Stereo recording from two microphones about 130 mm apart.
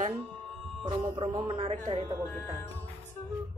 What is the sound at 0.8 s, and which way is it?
Speech, 35° right (ahead or behind).